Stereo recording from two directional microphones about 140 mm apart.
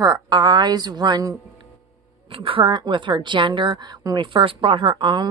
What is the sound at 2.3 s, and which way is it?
A woman's voice, 40° right (ahead or behind).